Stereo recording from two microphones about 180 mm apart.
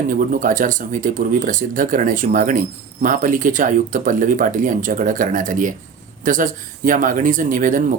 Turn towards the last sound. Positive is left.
turn(degrees=-45)  # may be behind; listen again after turning